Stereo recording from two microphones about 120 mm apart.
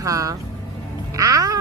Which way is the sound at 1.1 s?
30° right (ahead or behind).